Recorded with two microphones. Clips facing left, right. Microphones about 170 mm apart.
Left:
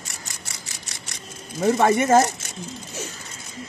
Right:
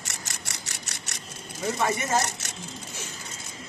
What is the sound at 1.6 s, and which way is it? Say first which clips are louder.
Speech: left 9 dB; 60° left (ahead or behind).